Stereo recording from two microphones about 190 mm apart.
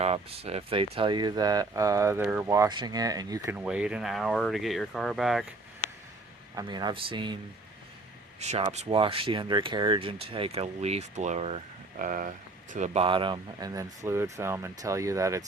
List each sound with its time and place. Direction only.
0.0 s speech: 30° right (ahead or behind); by 5.5 s centre (ahead or behind)
6.6 s speech: 25° right (ahead or behind)
8.4 s speech: 35° right (ahead or behind); by 15.4 s 15° right (ahead or behind)